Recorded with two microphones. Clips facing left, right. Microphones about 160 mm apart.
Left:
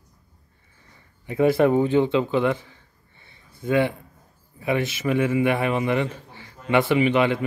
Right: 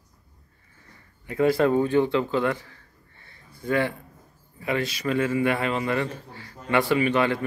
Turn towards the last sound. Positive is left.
turn(degrees=15)  # may be behind; listen again after turning